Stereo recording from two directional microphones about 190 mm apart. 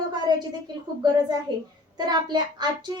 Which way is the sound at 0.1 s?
25° right (ahead or behind).